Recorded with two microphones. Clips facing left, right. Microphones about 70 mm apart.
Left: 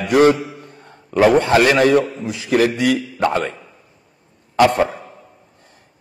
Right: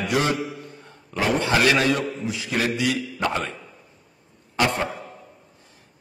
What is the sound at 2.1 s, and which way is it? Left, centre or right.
Speech, centre.